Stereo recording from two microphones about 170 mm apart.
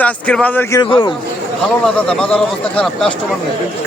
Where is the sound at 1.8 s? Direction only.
5° left (ahead or behind).